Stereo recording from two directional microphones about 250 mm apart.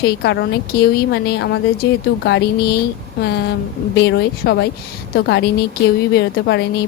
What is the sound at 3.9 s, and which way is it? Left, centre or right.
A woman's voice, left.